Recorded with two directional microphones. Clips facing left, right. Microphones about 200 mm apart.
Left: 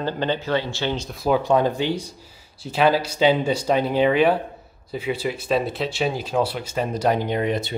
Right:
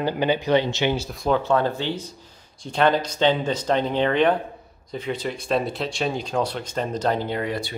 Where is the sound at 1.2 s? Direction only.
10° left (ahead or behind).